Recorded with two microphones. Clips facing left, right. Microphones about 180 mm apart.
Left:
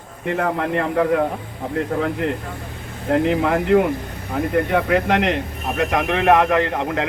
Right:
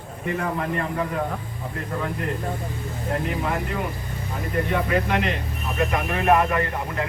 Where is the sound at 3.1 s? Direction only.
75° left (ahead or behind).